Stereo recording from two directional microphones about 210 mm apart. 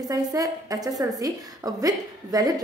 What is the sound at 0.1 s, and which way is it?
A woman's voice, 15° right (ahead or behind).